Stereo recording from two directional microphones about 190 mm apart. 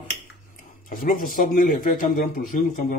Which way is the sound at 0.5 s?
45° left (ahead or behind).